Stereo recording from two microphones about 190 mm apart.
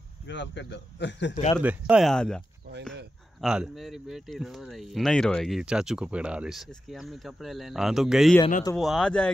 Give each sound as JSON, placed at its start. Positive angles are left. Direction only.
{"t": 0.3, "sound": "a man's voice", "side_deg": 70}
{"t": 1.6, "sound": "speech", "side_deg": -5}